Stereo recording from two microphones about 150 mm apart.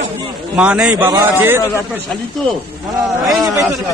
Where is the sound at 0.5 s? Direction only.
5° right (ahead or behind).